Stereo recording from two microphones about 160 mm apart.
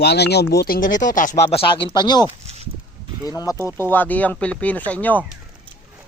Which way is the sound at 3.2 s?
20° left (ahead or behind).